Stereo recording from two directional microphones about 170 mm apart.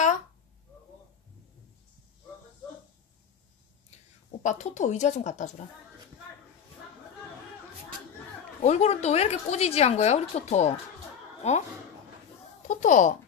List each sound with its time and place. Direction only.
4.4 s speech: 45° left (ahead or behind)
8.6 s speech: 40° left (ahead or behind)
12.6 s speech: 45° left (ahead or behind)